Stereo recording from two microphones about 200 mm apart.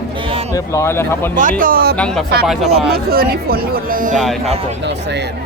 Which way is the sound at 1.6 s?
45° right (ahead or behind).